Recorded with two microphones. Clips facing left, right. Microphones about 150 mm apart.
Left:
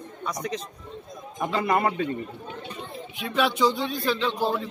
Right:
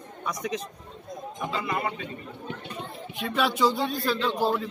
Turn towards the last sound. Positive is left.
turn(degrees=0)  # may be behind; listen again after turning